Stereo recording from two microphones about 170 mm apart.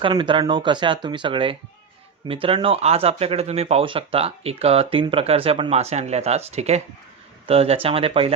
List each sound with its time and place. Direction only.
0.0 s speech: 30° right (ahead or behind)